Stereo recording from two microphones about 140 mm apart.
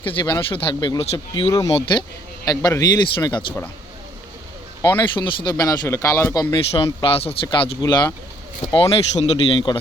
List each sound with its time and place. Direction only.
0.0 s speech: 35° left (ahead or behind)
4.8 s speech: 35° left (ahead or behind)
6.4 s speech: 35° left (ahead or behind)
8.7 s speech: 45° left (ahead or behind)